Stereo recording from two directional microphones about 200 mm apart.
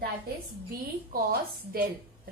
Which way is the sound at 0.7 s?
50° right (ahead or behind).